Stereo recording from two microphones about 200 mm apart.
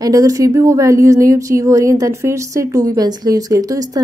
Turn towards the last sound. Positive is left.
turn(degrees=-20)  # may be behind; listen again after turning